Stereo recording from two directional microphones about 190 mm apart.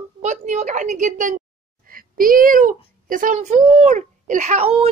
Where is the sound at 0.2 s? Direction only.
40° right (ahead or behind).